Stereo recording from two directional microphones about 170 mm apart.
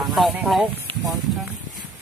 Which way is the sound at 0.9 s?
30° right (ahead or behind).